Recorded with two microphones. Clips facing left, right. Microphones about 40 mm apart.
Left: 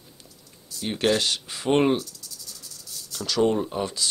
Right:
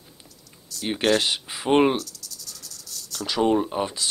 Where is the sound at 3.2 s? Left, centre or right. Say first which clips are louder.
Right 1 dB; centre.